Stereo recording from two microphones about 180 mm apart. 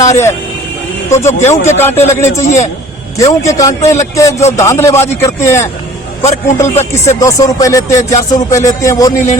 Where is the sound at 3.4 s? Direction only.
20° left (ahead or behind).